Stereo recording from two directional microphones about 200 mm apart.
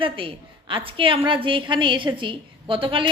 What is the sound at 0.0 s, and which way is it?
A woman's voice, 25° right (ahead or behind).